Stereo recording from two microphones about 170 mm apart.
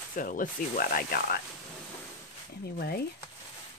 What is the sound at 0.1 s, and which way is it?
Speech, 50° left (ahead or behind).